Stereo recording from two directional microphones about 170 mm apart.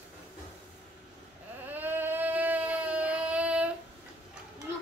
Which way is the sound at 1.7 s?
10° right (ahead or behind).